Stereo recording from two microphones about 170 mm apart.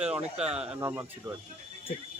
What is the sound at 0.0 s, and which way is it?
Speech, 5° right (ahead or behind).